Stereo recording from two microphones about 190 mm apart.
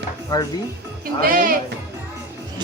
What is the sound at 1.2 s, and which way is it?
Speech, 50° right (ahead or behind).